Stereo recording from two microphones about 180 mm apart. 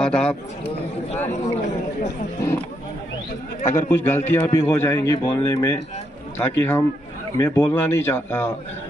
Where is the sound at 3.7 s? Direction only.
15° left (ahead or behind).